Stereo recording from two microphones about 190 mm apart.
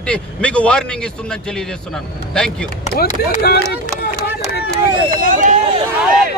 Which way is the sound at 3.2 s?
55° left (ahead or behind).